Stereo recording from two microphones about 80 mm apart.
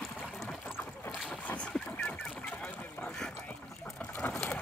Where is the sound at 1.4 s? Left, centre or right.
Centre.